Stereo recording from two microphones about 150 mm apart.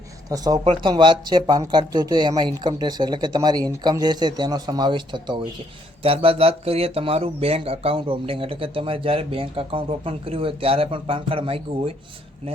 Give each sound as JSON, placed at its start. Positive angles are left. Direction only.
{"t": 0.3, "sound": "speech", "side_deg": -25}